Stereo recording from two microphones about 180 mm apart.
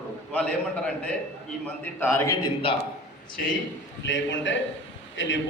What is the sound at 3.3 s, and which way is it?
Speech, 50° left (ahead or behind).